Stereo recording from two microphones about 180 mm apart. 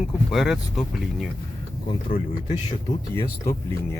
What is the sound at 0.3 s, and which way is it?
Speech, centre (ahead or behind).